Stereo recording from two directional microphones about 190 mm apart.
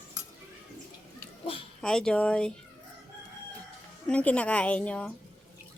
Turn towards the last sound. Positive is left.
turn(degrees=5)  # may be behind; listen again after turning